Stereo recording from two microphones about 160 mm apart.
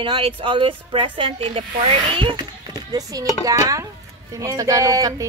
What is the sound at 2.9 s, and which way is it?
Speech, 20° right (ahead or behind).